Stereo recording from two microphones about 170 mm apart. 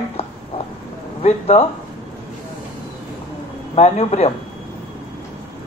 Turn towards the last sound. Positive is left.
turn(degrees=40)  # may be behind; listen again after turning